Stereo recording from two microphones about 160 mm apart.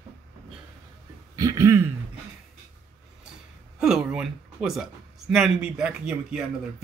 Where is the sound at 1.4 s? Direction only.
20° right (ahead or behind).